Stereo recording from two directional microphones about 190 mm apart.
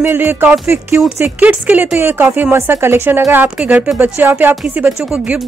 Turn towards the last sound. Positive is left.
turn(degrees=-5)  # may be behind; listen again after turning